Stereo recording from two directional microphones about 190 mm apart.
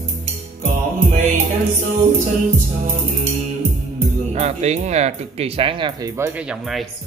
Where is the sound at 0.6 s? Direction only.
40° right (ahead or behind).